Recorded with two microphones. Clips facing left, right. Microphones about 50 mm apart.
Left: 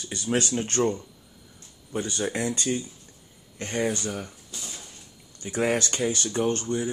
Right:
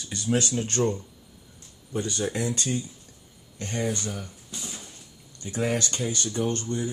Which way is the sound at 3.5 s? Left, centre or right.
Left.